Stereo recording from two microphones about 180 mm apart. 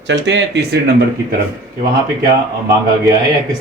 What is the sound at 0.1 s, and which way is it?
Speech, 75° right (ahead or behind).